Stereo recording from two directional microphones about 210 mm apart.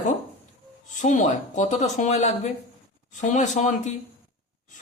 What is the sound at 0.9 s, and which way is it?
Speech, 35° left (ahead or behind).